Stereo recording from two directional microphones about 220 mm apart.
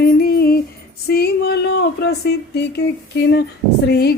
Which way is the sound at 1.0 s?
45° left (ahead or behind).